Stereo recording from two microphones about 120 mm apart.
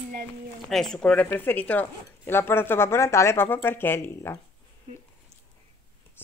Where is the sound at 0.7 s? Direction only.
5° left (ahead or behind); by 4.4 s 20° left (ahead or behind).